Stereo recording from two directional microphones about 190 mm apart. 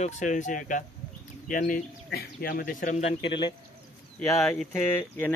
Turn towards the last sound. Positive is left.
turn(degrees=10)  # may be behind; listen again after turning